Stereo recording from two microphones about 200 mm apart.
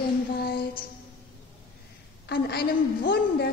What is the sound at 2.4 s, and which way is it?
Child singing, 55° left (ahead or behind).